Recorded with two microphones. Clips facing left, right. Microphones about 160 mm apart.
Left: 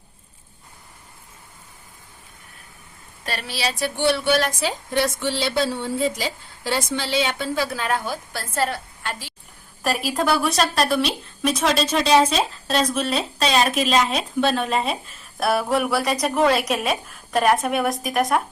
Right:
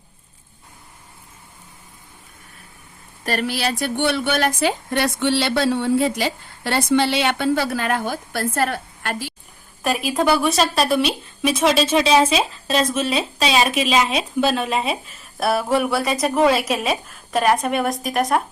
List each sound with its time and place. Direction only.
3.2 s a woman's voice: 55° right (ahead or behind)
9.8 s speech: centre (ahead or behind)